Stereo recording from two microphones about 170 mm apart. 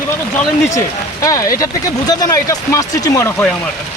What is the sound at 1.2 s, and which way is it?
Speech, 20° left (ahead or behind).